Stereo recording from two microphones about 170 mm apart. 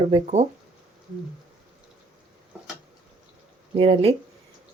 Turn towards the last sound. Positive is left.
turn(degrees=-35)  # may be behind; listen again after turning